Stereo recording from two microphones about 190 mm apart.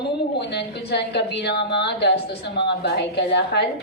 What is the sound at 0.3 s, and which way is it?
A woman's voice, 60° left (ahead or behind).